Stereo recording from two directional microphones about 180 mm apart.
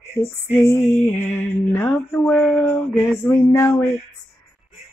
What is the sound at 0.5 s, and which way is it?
Mantra, 10° left (ahead or behind).